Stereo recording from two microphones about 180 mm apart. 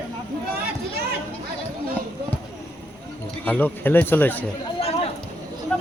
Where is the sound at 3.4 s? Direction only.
10° left (ahead or behind).